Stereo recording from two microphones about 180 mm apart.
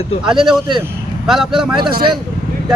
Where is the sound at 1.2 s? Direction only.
Centre (ahead or behind).